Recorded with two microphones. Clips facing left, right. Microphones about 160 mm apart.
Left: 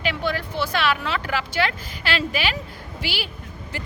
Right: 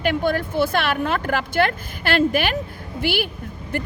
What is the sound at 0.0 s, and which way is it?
A woman's voice, 50° right (ahead or behind).